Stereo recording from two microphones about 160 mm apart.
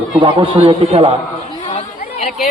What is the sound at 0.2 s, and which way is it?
Speech, 30° right (ahead or behind).